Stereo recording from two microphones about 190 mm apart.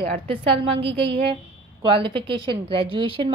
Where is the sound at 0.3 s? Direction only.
30° right (ahead or behind).